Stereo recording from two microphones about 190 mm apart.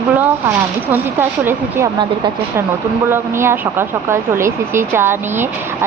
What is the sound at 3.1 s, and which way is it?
Speech, 10° right (ahead or behind).